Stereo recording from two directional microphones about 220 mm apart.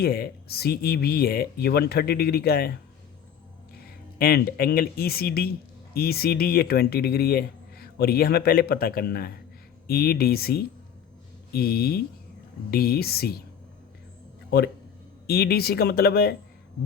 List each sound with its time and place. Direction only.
0.0 s speech: 45° left (ahead or behind)
4.2 s speech: 45° left (ahead or behind)
15.3 s speech: 45° left (ahead or behind)